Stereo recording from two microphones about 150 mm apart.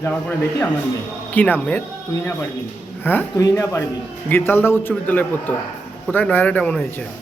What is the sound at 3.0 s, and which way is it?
A man's voice, 15° left (ahead or behind).